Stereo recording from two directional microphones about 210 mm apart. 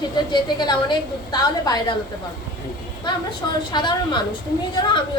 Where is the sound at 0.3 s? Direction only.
20° left (ahead or behind).